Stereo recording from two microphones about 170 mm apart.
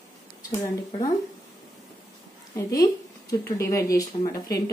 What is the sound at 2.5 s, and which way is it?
A woman's voice, 20° left (ahead or behind).